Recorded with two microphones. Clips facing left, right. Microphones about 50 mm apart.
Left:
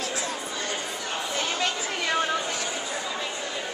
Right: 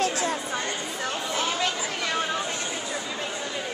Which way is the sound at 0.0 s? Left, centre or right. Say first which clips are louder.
Right 5 dB; right.